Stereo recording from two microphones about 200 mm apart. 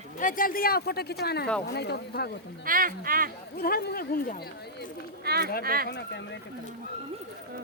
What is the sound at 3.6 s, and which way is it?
Speech, 50° left (ahead or behind).